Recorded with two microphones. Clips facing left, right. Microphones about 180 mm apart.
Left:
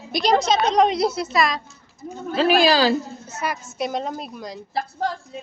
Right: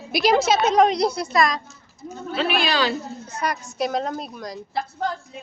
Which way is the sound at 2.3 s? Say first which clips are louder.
Left 6 dB; 35° left (ahead or behind).